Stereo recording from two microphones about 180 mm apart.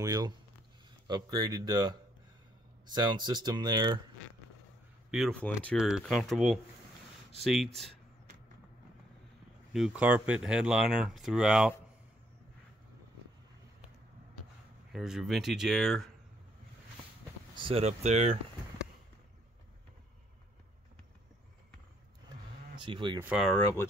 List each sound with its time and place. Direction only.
0.0 s speech: 20° right (ahead or behind)
5.1 s speech: centre (ahead or behind)
9.7 s speech: 5° right (ahead or behind)
14.9 s speech: centre (ahead or behind)
17.6 s speech: 30° right (ahead or behind)
22.8 s speech: 25° right (ahead or behind)
23.1 s speech: 5° right (ahead or behind)
23.6 s speech: 15° left (ahead or behind)